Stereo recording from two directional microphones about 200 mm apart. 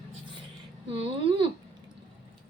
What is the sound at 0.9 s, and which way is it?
Speech, 30° right (ahead or behind).